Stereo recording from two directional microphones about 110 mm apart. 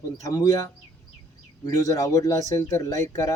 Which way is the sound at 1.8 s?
30° left (ahead or behind).